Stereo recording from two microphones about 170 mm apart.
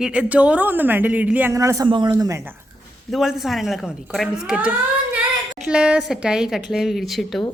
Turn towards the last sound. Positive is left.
turn(degrees=0)  # may be behind; listen again after turning